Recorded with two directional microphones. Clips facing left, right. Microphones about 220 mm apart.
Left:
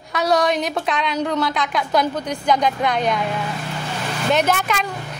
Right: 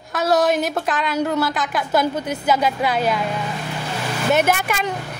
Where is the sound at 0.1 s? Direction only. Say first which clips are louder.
Right 1 dB; centre (ahead or behind).